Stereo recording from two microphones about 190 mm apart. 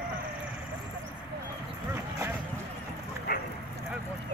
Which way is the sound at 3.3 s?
60° left (ahead or behind).